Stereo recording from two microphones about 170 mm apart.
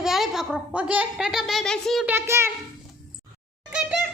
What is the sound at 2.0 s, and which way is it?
Speech, 15° right (ahead or behind).